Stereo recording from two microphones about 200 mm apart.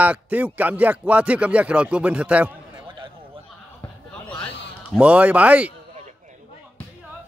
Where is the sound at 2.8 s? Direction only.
25° right (ahead or behind).